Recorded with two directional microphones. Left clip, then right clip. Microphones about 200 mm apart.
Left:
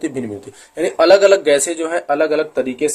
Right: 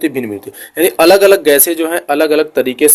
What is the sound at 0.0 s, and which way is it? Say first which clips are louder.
Speech: right 6 dB; 30° right (ahead or behind).